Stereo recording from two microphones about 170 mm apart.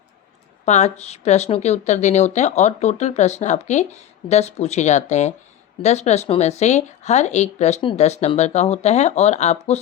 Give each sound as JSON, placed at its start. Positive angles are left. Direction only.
{"t": 0.6, "sound": "speech", "side_deg": 40}